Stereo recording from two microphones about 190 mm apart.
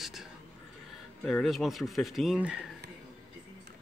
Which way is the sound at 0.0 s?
Centre (ahead or behind).